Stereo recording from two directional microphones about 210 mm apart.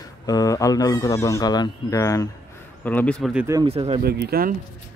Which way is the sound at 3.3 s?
5° right (ahead or behind).